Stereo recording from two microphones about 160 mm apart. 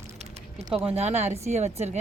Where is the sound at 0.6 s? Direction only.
35° right (ahead or behind).